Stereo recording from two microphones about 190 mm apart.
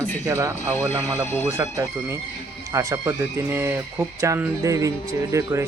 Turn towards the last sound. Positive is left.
turn(degrees=-15)  # may be behind; listen again after turning